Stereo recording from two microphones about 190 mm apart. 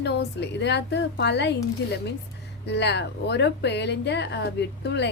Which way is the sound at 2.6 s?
65° left (ahead or behind).